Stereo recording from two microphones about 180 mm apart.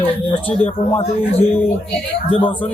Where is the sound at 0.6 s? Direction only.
35° left (ahead or behind).